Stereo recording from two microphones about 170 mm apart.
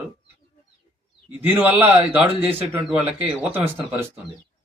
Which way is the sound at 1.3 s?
10° right (ahead or behind).